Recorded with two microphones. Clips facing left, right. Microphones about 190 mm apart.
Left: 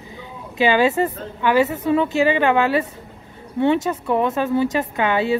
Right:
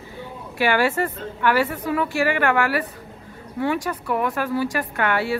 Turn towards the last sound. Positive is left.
turn(degrees=20)  # may be behind; listen again after turning